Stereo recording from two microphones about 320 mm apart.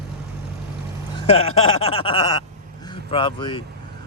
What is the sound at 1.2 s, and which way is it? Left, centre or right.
Speech, centre.